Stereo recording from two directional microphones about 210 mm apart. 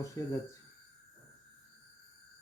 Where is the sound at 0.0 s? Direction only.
15° left (ahead or behind).